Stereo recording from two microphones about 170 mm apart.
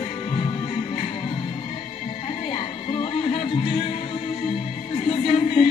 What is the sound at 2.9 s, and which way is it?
Music, 35° left (ahead or behind).